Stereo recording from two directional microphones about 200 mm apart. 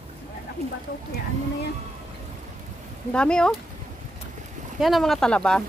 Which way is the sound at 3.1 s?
5° left (ahead or behind).